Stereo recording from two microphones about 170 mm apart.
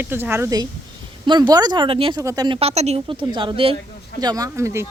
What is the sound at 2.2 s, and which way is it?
Speech, 20° right (ahead or behind).